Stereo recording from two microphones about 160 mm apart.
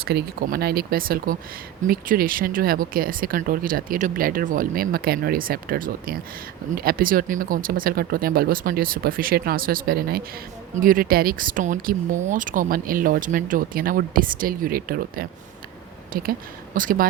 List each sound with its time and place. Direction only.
0.0 s speech: 80° right
10.8 s speech: 60° right (ahead or behind)